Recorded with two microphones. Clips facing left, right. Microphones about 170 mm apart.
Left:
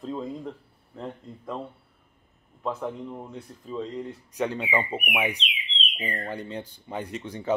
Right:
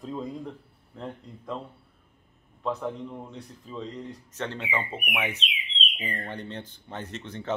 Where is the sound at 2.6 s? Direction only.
5° left (ahead or behind).